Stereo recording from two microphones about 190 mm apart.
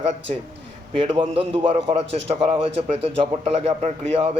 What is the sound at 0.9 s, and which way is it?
A man's voice, 30° right (ahead or behind).